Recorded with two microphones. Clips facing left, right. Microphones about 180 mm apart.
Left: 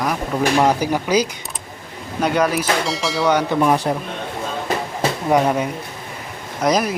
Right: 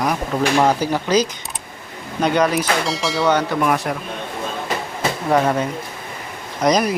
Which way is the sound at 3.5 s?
30° left (ahead or behind).